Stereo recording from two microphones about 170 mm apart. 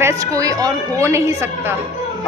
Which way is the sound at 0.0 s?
20° right (ahead or behind).